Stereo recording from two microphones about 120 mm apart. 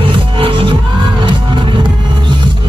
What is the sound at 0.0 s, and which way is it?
Music, 50° right (ahead or behind).